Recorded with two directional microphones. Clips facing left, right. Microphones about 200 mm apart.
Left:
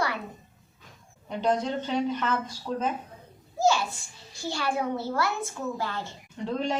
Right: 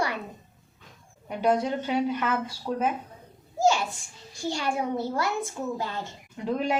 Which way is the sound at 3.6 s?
15° right (ahead or behind).